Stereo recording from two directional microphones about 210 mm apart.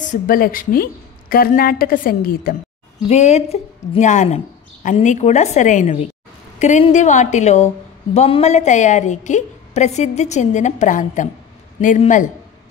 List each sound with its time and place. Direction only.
0.0 s a woman's voice: 40° left (ahead or behind)
3.1 s a woman's voice: 30° left (ahead or behind)